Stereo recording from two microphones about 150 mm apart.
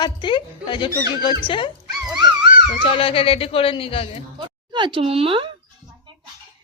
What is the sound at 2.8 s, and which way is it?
A woman's voice, 35° left (ahead or behind).